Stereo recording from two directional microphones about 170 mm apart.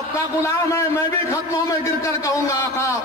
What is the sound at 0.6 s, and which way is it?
Speech, 20° left (ahead or behind).